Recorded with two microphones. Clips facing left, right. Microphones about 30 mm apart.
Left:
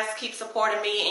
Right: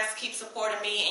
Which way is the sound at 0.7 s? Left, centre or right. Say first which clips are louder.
Even; centre.